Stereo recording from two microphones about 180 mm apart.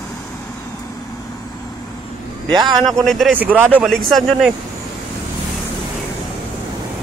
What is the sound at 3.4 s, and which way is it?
Speech, 10° right (ahead or behind).